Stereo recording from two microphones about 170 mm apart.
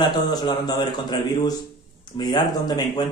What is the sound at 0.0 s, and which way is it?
Speech, 25° left (ahead or behind).